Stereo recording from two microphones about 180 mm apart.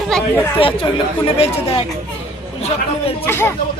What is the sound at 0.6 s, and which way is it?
Speech, 30° left (ahead or behind).